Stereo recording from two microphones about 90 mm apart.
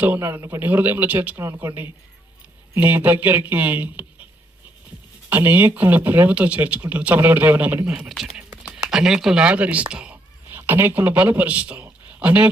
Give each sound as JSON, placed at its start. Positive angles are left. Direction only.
{"t": 0.0, "sound": "speech", "side_deg": -25}
{"t": 5.3, "sound": "speech", "side_deg": -20}
{"t": 7.9, "sound": "speech", "side_deg": -10}
{"t": 10.5, "sound": "speech", "side_deg": -25}
{"t": 11.8, "sound": "a sound", "side_deg": -25}
{"t": 12.2, "sound": "speech", "side_deg": -15}